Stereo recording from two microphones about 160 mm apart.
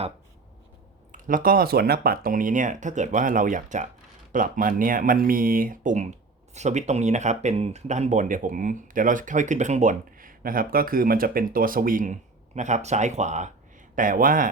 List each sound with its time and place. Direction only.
1.1 s speech: 60° right (ahead or behind)